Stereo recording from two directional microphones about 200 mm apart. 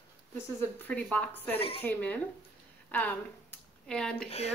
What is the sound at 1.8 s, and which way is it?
A woman's voice, 10° left (ahead or behind).